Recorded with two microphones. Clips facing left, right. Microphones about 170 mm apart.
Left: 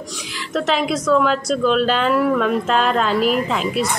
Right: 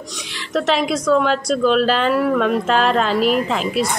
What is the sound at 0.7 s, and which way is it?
A woman's voice, centre (ahead or behind).